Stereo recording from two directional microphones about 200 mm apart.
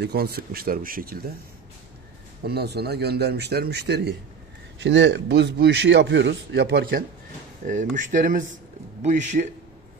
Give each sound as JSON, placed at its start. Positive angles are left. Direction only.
{"t": 0.0, "sound": "speech", "side_deg": -50}
{"t": 2.4, "sound": "a man's voice", "side_deg": -55}